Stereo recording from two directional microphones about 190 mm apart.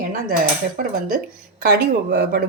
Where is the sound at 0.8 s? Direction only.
45° right (ahead or behind).